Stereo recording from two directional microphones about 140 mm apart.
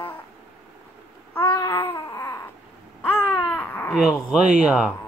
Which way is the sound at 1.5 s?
15° left (ahead or behind).